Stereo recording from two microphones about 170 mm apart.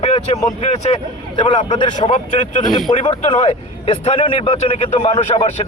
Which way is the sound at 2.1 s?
45° left (ahead or behind).